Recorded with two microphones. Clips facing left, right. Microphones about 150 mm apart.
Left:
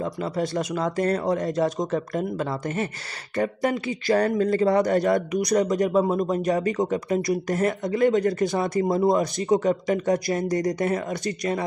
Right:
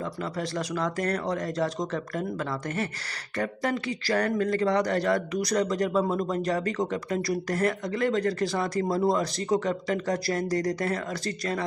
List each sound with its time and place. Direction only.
0.0 s speech: 25° left (ahead or behind)